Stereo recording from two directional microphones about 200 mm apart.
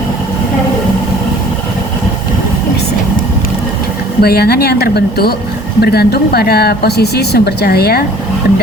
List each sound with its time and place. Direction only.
4.2 s speech: 50° left (ahead or behind)